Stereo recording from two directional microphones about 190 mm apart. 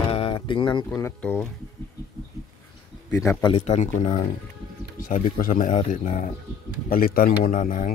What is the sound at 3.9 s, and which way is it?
A man's voice, 40° left (ahead or behind).